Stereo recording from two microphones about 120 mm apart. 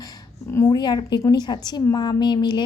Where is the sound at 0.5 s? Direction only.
25° left (ahead or behind).